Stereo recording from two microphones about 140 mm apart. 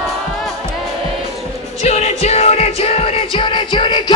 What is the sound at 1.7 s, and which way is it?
Music, 50° left (ahead or behind).